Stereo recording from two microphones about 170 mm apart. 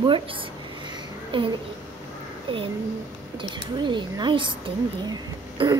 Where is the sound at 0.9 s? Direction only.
30° right (ahead or behind).